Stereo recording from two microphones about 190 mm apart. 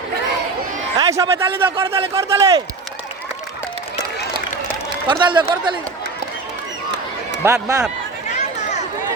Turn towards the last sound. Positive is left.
turn(degrees=-15)  # may be behind; listen again after turning